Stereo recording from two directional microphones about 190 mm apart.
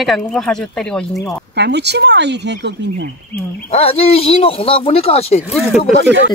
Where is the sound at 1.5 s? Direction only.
60° right (ahead or behind).